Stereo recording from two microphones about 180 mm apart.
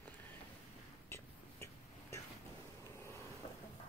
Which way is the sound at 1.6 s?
15° left (ahead or behind).